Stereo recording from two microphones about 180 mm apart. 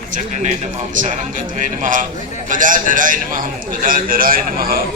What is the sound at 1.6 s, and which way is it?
A man's voice, 45° right (ahead or behind).